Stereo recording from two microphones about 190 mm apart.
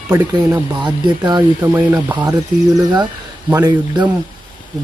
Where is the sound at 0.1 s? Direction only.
20° right (ahead or behind).